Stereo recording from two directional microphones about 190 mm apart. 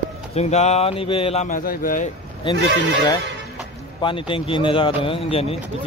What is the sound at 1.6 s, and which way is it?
Speech, 50° left (ahead or behind).